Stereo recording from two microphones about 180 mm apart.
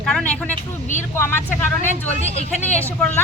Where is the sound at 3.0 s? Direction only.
10° left (ahead or behind).